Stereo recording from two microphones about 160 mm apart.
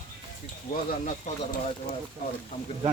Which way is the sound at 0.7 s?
55° left (ahead or behind).